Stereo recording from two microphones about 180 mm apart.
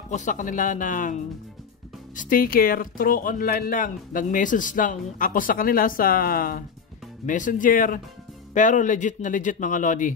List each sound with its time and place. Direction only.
0.1 s speech: 45° left (ahead or behind)